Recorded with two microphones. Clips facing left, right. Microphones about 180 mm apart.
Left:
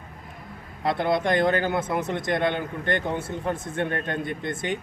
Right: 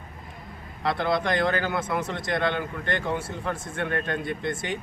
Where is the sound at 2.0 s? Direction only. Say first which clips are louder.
Left 3 dB; 55° left (ahead or behind).